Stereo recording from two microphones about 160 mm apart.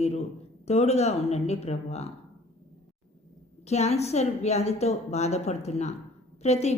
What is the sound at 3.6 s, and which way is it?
A woman's voice, 45° left (ahead or behind).